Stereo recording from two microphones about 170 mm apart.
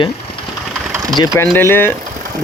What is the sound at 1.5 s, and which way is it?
Speech, 10° left (ahead or behind).